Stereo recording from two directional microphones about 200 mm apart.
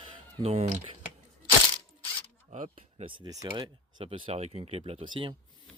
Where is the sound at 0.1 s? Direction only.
30° right (ahead or behind).